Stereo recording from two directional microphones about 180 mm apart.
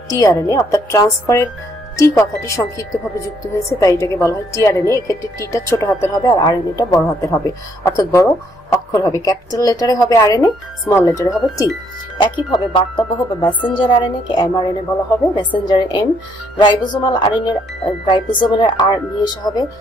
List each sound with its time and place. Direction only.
0.1 s speech: 20° left (ahead or behind)